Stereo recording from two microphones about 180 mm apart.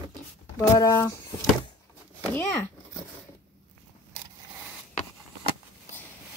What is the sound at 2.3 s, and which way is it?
Speech, 15° left (ahead or behind).